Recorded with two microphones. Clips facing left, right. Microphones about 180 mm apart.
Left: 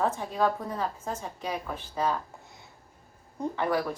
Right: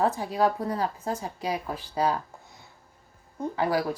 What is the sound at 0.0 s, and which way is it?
A woman's voice, 35° right (ahead or behind).